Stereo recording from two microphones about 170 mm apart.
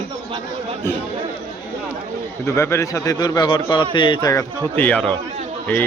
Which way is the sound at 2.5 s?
15° left (ahead or behind).